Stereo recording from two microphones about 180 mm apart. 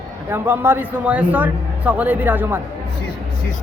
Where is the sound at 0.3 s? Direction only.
10° right (ahead or behind).